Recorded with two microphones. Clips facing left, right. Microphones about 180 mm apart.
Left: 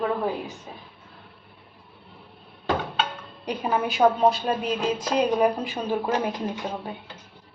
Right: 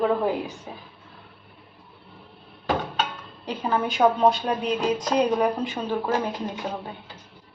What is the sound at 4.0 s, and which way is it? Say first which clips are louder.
A woman's voice: even; centre (ahead or behind).